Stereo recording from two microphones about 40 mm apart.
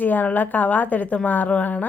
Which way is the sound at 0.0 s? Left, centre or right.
Left.